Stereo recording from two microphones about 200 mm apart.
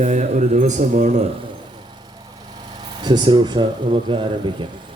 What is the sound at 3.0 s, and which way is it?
Speech, 20° right (ahead or behind).